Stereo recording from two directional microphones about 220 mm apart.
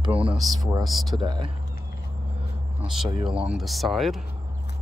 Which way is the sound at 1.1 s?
20° right (ahead or behind).